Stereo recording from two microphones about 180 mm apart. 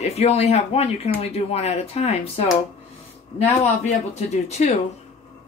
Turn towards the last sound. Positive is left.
turn(degrees=40)  # may be behind; listen again after turning